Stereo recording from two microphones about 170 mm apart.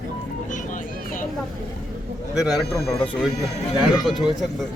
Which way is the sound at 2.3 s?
Centre (ahead or behind).